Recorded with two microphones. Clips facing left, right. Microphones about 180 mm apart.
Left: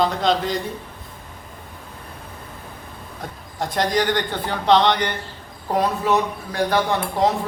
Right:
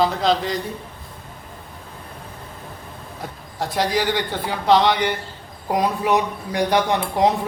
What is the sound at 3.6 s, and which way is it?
Speech, 5° right (ahead or behind).